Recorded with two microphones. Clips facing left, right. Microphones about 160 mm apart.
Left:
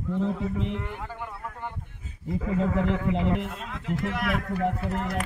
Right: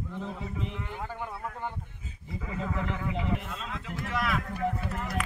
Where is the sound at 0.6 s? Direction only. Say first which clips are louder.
Left 6 dB; 75° left (ahead or behind).